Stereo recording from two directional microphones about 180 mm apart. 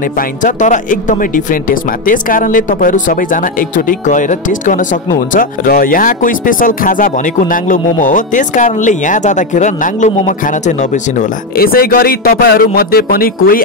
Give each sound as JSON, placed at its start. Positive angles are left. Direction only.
{"t": 0.4, "sound": "speech", "side_deg": 45}